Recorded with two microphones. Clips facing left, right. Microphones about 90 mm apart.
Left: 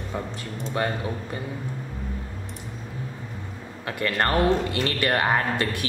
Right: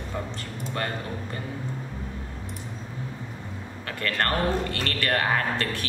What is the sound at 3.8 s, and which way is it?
Speech, 15° left (ahead or behind).